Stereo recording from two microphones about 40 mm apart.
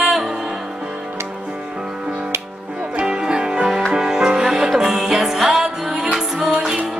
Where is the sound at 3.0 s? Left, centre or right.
Centre.